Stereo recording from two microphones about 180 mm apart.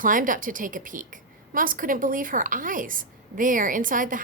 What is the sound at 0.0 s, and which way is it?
A woman's voice, 50° right (ahead or behind).